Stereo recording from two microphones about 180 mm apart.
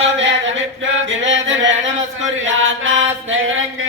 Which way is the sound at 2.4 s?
90° right.